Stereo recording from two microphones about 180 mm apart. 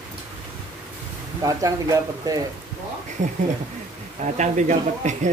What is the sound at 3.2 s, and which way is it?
Speech, 45° right (ahead or behind).